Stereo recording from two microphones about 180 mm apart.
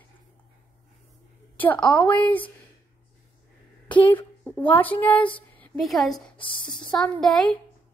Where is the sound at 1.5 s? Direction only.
10° left (ahead or behind).